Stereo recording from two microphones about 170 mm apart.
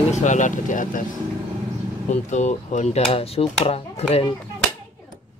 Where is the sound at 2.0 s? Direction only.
45° left (ahead or behind).